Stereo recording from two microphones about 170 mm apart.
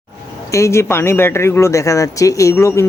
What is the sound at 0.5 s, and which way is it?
Speech, 15° left (ahead or behind).